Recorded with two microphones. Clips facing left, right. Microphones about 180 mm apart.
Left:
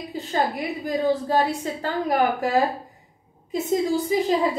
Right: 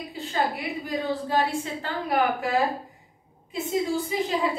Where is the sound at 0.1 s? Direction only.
40° left (ahead or behind).